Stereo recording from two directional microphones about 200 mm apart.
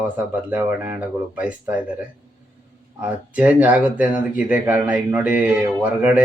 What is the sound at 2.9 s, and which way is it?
Speech, 10° right (ahead or behind).